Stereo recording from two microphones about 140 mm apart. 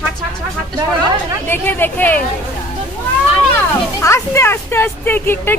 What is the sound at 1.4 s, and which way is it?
Speech, 15° left (ahead or behind).